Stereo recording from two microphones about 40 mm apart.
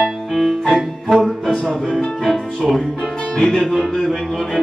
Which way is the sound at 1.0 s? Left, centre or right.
Centre.